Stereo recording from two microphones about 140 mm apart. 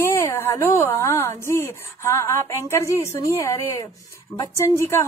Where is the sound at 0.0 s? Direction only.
15° left (ahead or behind).